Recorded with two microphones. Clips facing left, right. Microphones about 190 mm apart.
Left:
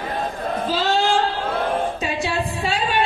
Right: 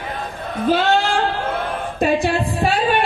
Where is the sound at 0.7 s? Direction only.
60° right (ahead or behind).